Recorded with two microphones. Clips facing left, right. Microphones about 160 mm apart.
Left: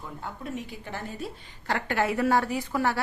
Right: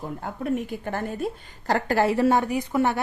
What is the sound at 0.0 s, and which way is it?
A woman's voice, 50° right (ahead or behind).